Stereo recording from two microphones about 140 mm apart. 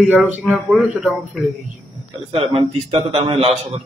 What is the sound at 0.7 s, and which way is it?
Speech, centre (ahead or behind).